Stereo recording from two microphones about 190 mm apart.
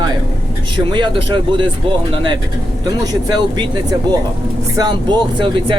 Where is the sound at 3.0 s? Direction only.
20° right (ahead or behind).